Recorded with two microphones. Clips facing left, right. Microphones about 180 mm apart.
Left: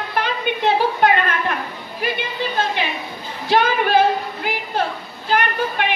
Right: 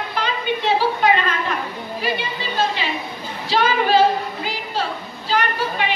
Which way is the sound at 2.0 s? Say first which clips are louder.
Left 2 dB; 55° left (ahead or behind).